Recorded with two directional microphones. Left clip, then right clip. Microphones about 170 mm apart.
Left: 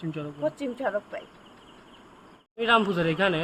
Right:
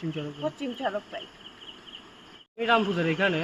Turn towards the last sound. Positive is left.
turn(degrees=25)  # may be behind; listen again after turning